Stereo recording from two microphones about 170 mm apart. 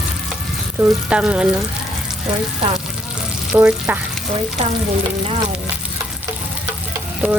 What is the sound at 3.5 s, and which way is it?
Speech, 10° right (ahead or behind).